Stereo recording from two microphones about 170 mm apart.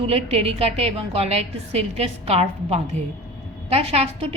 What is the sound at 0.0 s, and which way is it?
A woman's voice, 35° right (ahead or behind).